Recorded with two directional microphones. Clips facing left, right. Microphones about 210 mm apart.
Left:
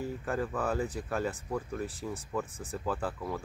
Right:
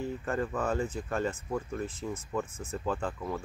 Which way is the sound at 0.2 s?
Centre (ahead or behind).